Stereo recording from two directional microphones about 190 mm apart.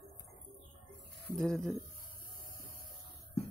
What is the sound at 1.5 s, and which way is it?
Speech, centre (ahead or behind).